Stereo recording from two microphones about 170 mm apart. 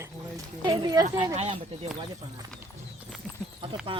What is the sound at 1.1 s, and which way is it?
Speech, 25° right (ahead or behind).